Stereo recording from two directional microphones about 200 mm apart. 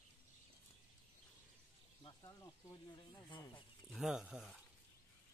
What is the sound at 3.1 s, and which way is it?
Speech, 20° left (ahead or behind).